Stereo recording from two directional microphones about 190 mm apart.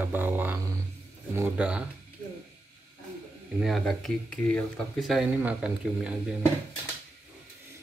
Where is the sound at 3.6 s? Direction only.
Centre (ahead or behind).